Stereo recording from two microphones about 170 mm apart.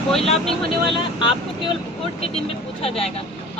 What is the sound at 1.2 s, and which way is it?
Speech, 30° left (ahead or behind).